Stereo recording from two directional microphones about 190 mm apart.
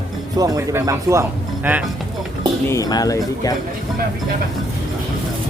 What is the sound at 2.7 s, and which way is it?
Speech, 20° left (ahead or behind).